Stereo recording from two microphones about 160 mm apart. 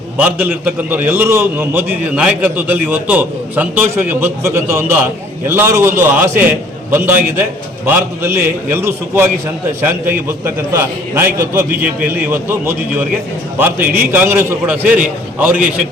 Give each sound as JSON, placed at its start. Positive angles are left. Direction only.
{"t": 0.2, "sound": "a man's voice", "side_deg": -10}